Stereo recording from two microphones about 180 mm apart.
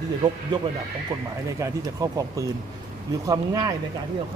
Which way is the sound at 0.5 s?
25° right (ahead or behind).